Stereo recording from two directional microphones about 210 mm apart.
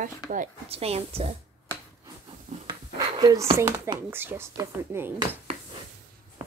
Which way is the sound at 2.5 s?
35° right (ahead or behind).